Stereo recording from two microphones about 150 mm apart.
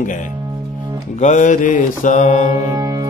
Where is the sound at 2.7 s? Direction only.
25° right (ahead or behind).